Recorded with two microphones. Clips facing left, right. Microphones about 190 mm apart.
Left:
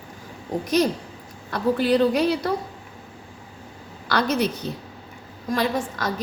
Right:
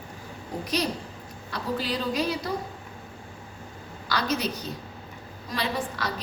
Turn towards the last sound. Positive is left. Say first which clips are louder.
# left 5 dB
turn(degrees=45)  # may be behind; listen again after turning